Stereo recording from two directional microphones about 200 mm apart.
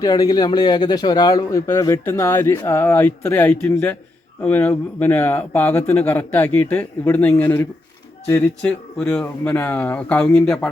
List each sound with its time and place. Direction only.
0.0 s speech: 20° left (ahead or behind)